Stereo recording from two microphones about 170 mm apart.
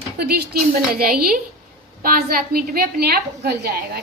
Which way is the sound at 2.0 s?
60° right (ahead or behind).